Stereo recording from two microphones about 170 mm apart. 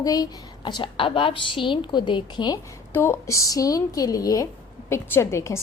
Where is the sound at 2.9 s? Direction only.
15° left (ahead or behind).